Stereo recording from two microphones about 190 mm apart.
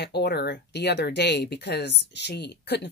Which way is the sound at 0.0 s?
60° left (ahead or behind).